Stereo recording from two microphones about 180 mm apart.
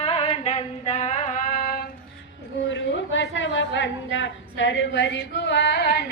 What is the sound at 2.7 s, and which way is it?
A woman's voice, 85° left.